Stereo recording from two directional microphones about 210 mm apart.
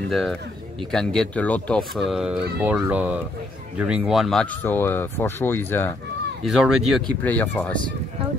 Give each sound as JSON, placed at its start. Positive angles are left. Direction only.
{"t": 0.1, "sound": "speech", "side_deg": 0}
{"t": 6.4, "sound": "speech", "side_deg": 0}